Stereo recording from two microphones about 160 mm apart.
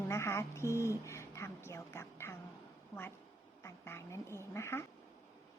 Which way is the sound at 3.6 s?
15° left (ahead or behind).